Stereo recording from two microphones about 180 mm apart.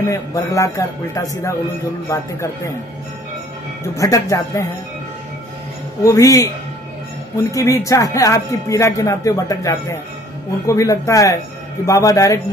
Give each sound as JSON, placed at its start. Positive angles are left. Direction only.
{"t": 0.1, "sound": "speech", "side_deg": 15}
{"t": 3.9, "sound": "speech", "side_deg": 20}
{"t": 6.0, "sound": "speech", "side_deg": 15}